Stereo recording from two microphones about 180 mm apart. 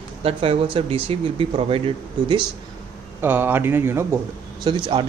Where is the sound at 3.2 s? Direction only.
10° right (ahead or behind).